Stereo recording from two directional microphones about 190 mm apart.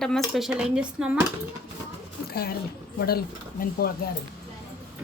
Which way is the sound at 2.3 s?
50° left (ahead or behind).